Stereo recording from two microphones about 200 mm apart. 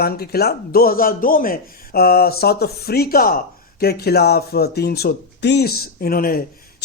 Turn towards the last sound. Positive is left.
turn(degrees=45)  # may be behind; listen again after turning